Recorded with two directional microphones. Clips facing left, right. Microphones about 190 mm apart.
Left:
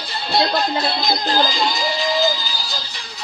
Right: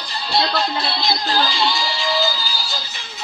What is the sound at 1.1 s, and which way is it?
Music, 40° left (ahead or behind).